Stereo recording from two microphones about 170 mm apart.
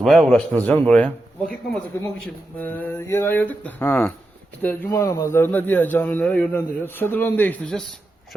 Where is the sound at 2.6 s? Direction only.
10° left (ahead or behind).